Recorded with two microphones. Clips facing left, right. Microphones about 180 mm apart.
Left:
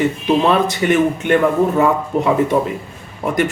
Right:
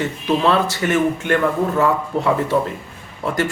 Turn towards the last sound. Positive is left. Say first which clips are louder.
# left 3 dB
turn(degrees=15)  # may be behind; listen again after turning